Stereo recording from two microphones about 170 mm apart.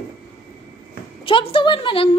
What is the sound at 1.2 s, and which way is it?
Speech, 30° left (ahead or behind).